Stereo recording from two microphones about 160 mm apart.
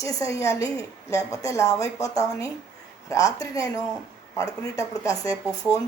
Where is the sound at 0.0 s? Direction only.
20° left (ahead or behind).